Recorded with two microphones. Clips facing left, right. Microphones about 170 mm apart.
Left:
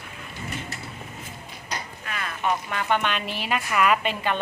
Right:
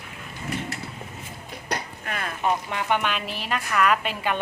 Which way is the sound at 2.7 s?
15° right (ahead or behind).